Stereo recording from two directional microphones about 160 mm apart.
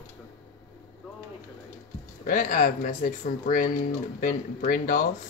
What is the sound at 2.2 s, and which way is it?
Speech, 55° left (ahead or behind).